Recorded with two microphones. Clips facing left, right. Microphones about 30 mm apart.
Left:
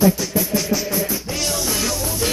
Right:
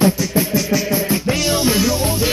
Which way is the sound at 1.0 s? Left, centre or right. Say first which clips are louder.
Right 6 dB; right.